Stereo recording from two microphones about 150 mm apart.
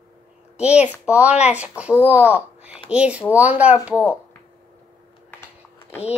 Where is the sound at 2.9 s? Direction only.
10° right (ahead or behind).